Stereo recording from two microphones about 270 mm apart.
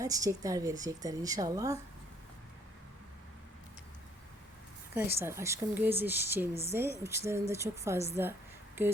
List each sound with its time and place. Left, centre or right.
0.0 s a woman's voice: centre
4.9 s a woman's voice: centre